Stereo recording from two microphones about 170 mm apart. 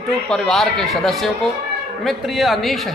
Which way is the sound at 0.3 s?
Centre (ahead or behind).